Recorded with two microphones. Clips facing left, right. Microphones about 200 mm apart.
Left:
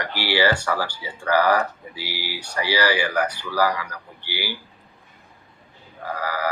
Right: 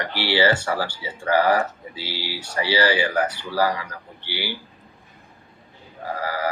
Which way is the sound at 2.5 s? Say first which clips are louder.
Right 1 dB; 20° right (ahead or behind).